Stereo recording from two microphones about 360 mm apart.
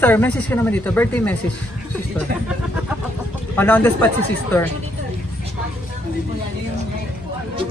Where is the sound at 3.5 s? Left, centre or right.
Centre.